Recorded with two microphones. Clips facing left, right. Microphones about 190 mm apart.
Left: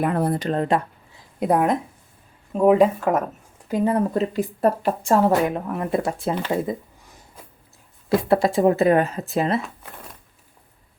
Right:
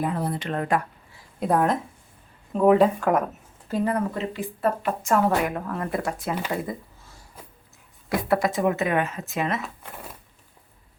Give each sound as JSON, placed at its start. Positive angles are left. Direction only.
{"t": 0.0, "sound": "speech", "side_deg": 60}
{"t": 0.3, "sound": "speech", "side_deg": 35}
{"t": 1.4, "sound": "speech", "side_deg": 10}
{"t": 3.7, "sound": "speech", "side_deg": 20}
{"t": 4.1, "sound": "speech", "side_deg": 40}
{"t": 6.5, "sound": "a sound", "side_deg": 20}
{"t": 8.1, "sound": "speech", "side_deg": 30}